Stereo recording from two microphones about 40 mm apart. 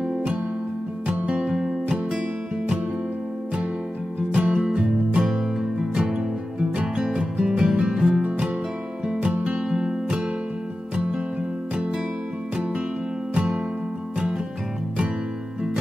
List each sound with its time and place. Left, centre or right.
0.0 s music: right
1.5 s music: centre
4.3 s music: right
13.3 s music: right